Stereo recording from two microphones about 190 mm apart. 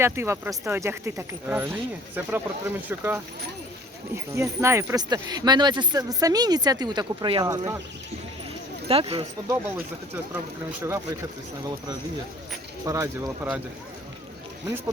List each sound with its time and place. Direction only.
0.0 s speech: 15° right (ahead or behind)
8.9 s speech: 30° right (ahead or behind)
10.8 s speech: 15° right (ahead or behind)
12.8 s speech: 15° right (ahead or behind)